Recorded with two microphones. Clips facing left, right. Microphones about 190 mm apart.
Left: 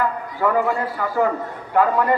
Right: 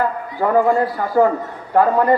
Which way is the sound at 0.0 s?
40° right (ahead or behind).